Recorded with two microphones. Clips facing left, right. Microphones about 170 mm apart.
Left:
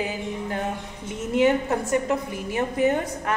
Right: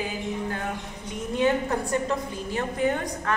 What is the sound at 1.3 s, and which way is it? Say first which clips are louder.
A woman's voice: left 3 dB; 20° left (ahead or behind).